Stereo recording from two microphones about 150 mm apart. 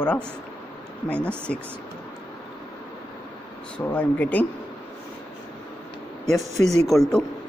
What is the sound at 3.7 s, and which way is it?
Speech, 10° left (ahead or behind).